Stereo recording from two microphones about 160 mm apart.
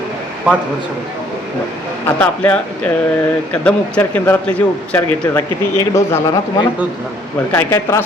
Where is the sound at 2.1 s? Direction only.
10° left (ahead or behind).